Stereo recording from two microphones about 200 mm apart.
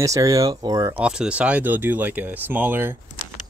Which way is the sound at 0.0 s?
15° right (ahead or behind).